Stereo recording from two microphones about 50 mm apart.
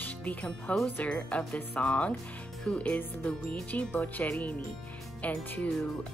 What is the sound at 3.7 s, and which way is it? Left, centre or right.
Speech, left.